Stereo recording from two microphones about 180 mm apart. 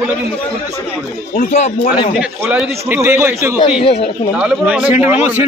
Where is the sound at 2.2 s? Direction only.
5° right (ahead or behind).